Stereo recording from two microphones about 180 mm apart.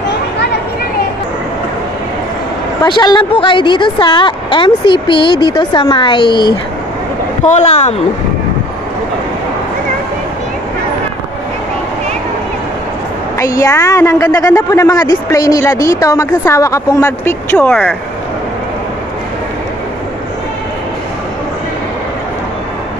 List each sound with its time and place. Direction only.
2.8 s a woman's voice: 25° left (ahead or behind)
7.4 s speech: 35° left (ahead or behind)
13.4 s a woman's voice: 20° left (ahead or behind)